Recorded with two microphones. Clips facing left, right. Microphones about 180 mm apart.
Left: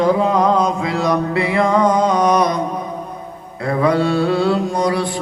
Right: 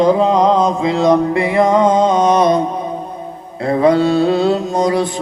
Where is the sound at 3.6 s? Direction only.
25° right (ahead or behind).